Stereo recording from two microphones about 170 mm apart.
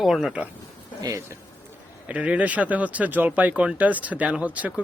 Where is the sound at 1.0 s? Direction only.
20° right (ahead or behind).